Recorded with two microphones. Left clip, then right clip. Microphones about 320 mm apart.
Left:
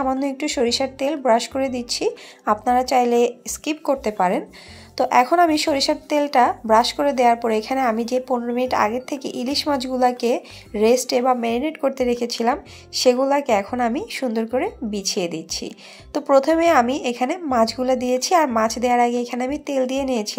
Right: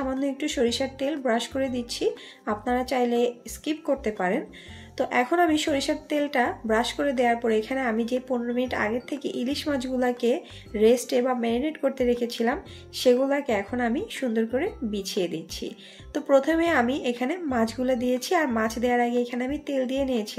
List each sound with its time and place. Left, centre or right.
0.0 s speech: centre